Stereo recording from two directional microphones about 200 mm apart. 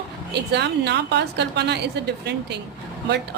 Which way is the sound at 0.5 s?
60° right (ahead or behind).